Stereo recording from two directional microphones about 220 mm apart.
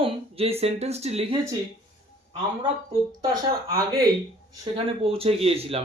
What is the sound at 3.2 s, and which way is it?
Speech, 20° right (ahead or behind).